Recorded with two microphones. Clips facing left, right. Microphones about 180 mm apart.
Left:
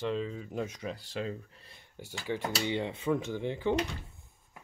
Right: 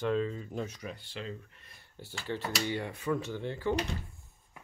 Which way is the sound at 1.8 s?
15° left (ahead or behind).